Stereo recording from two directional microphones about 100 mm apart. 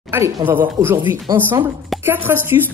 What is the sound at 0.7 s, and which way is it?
Speech, 20° right (ahead or behind).